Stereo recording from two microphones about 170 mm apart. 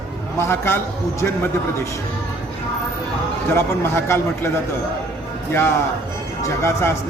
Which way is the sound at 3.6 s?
15° left (ahead or behind).